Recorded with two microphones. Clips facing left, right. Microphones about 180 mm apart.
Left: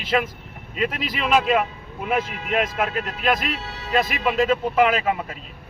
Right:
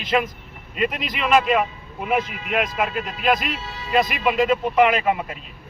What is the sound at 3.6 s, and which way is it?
Speech, 65° left (ahead or behind).